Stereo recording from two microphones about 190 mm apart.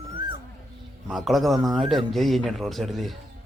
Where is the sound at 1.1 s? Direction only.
Centre (ahead or behind).